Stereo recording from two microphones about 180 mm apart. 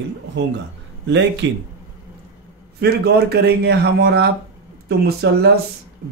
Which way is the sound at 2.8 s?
65° right (ahead or behind).